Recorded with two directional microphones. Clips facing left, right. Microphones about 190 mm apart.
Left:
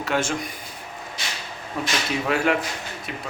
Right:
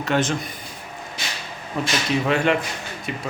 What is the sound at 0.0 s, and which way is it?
Speech, 10° left (ahead or behind).